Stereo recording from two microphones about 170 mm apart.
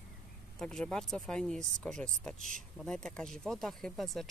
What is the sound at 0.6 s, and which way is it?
Speech, 5° left (ahead or behind).